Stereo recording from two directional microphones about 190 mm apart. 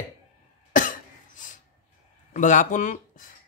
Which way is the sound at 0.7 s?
45° left (ahead or behind).